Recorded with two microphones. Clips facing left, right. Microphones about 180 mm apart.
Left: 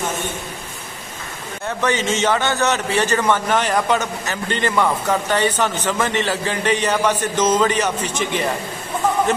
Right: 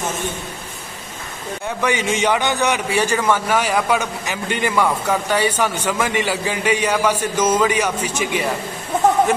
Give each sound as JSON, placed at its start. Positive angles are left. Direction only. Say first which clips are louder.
{"t": 1.8, "sound": "a man's voice", "louder": "even", "side_deg": -10}